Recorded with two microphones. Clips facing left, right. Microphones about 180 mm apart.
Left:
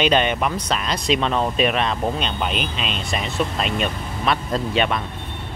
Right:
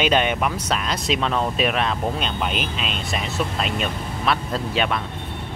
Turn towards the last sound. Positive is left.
turn(degrees=0)  # may be behind; listen again after turning